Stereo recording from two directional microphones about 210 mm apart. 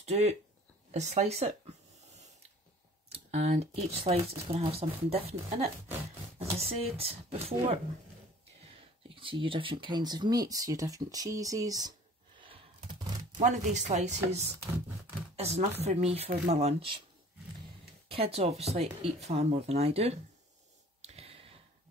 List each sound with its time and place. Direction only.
0.0 s speech: 30° right (ahead or behind)
3.1 s speech: 30° right (ahead or behind)
6.3 s speech: 30° right (ahead or behind)
9.1 s speech: 25° right (ahead or behind)
12.4 s a sound: 25° right (ahead or behind)
15.8 s speech: 30° right (ahead or behind)
18.0 s speech: 25° right (ahead or behind)
21.0 s sigh: 30° right (ahead or behind)